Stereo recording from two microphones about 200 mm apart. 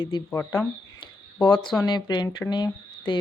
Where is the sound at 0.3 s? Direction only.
10° left (ahead or behind).